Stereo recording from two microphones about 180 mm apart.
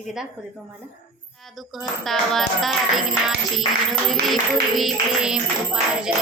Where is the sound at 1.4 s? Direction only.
Centre (ahead or behind).